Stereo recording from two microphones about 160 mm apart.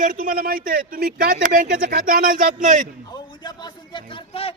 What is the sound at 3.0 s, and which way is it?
A man's voice, 25° left (ahead or behind).